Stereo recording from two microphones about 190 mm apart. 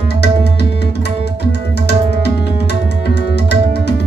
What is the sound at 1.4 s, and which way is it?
Tabla, 60° left (ahead or behind).